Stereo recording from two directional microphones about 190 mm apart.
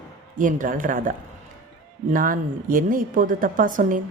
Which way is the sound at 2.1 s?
45° right (ahead or behind).